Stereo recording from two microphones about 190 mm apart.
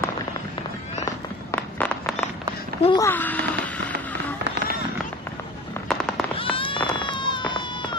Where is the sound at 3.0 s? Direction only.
10° left (ahead or behind).